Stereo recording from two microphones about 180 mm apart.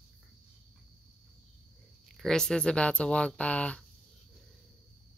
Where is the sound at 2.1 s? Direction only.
Centre (ahead or behind).